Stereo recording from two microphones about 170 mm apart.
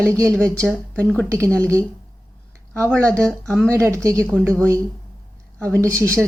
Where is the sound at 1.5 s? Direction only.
20° right (ahead or behind).